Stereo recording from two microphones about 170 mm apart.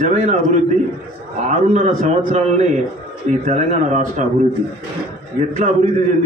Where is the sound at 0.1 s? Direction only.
40° right (ahead or behind).